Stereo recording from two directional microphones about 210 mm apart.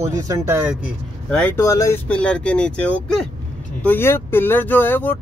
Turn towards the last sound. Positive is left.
turn(degrees=10)  # may be behind; listen again after turning